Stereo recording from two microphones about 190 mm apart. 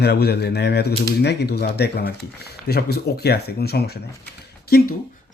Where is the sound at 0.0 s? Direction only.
60° left (ahead or behind).